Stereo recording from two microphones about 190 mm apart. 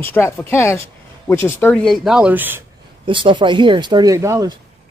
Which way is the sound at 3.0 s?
25° right (ahead or behind).